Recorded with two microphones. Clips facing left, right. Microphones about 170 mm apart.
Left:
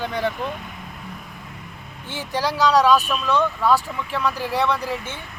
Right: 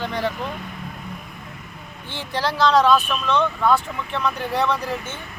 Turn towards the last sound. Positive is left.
turn(degrees=5)  # may be behind; listen again after turning